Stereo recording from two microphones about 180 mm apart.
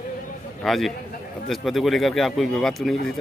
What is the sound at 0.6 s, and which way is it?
A man's voice, centre (ahead or behind).